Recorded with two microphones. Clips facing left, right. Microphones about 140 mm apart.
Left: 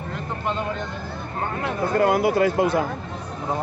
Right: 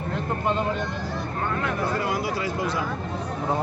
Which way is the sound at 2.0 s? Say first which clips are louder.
Left 8 dB; 55° left (ahead or behind).